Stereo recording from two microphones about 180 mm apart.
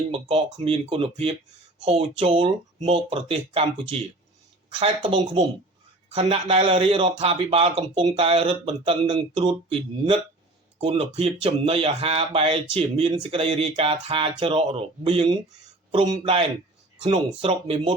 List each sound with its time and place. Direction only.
0.1 s speech: 35° right (ahead or behind)